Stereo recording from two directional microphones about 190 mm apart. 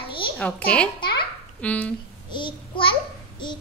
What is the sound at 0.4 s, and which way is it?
A child's voice, 5° left (ahead or behind).